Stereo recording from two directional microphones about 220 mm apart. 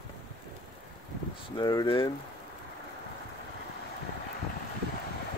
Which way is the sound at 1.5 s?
20° left (ahead or behind).